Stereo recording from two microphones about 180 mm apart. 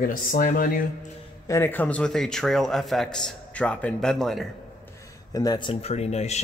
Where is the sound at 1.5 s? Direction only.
10° left (ahead or behind).